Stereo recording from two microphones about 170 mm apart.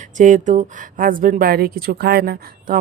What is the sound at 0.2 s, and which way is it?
Speech, 45° right (ahead or behind).